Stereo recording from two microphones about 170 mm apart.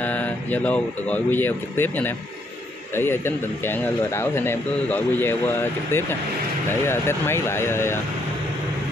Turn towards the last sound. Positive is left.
turn(degrees=15)  # may be behind; listen again after turning